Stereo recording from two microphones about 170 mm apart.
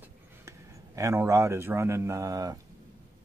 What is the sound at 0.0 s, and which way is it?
Speech, 15° right (ahead or behind).